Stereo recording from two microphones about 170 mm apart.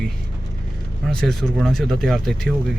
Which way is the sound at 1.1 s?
5° left (ahead or behind).